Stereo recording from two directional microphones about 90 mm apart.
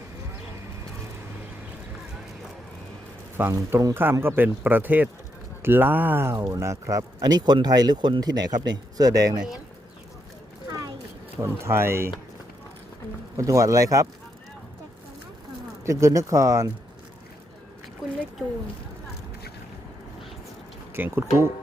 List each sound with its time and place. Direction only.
3.5 s speech: 35° right (ahead or behind)
6.3 s speech: 35° right (ahead or behind)
11.3 s speech: 30° right (ahead or behind)
13.3 s speech: 35° right (ahead or behind)
15.9 s speech: 35° right (ahead or behind)
20.9 s speech: 25° right (ahead or behind)